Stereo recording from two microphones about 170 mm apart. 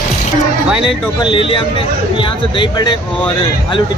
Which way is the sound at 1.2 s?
30° left (ahead or behind).